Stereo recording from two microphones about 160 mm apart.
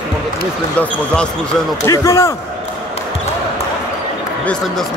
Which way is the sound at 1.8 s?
20° left (ahead or behind).